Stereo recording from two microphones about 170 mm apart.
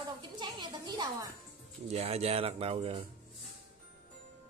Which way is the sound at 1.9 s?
35° right (ahead or behind).